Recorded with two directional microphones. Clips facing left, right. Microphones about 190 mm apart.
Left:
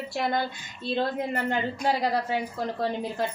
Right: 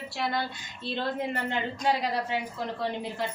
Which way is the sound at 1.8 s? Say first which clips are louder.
Left 2 dB; 40° left (ahead or behind).